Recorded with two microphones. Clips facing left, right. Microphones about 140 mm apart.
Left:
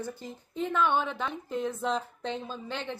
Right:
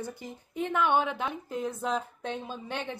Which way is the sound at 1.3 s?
5° right (ahead or behind).